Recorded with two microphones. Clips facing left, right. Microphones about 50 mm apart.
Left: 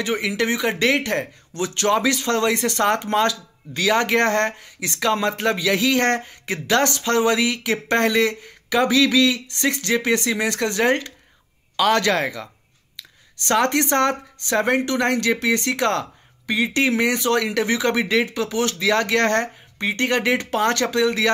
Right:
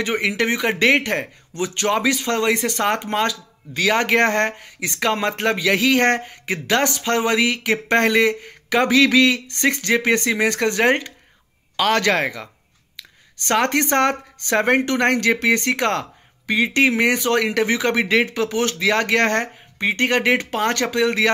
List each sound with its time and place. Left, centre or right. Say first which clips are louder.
0.0 s speech: right 2 dB; right
13.5 s speech: even; right